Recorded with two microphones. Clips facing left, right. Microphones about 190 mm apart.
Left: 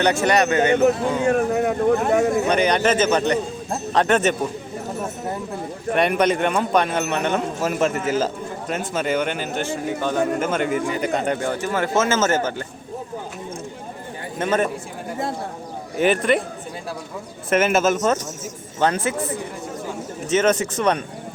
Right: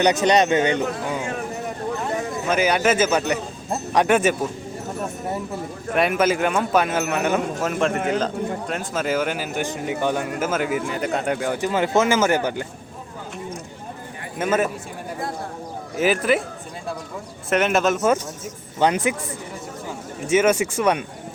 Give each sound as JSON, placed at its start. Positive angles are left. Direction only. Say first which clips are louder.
{"t": 0.0, "sound": "speech", "louder": "right 1 dB", "side_deg": -20}
{"t": 1.3, "sound": "speech", "louder": "left 9 dB", "side_deg": 60}
{"t": 2.5, "sound": "speech", "louder": "left 1 dB", "side_deg": -5}
{"t": 5.9, "sound": "speech", "louder": "left 1 dB", "side_deg": 0}
{"t": 14.3, "sound": "speech", "louder": "even", "side_deg": -5}
{"t": 16.0, "sound": "speech", "louder": "left 1 dB", "side_deg": -5}
{"t": 17.5, "sound": "speech", "louder": "left 1 dB", "side_deg": 0}
{"t": 18.8, "sound": "speech", "louder": "right 1 dB", "side_deg": -15}
{"t": 20.2, "sound": "speech", "louder": "right 1 dB", "side_deg": -10}